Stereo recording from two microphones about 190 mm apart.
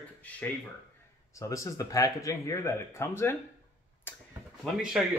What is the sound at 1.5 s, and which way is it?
Speech, 15° left (ahead or behind).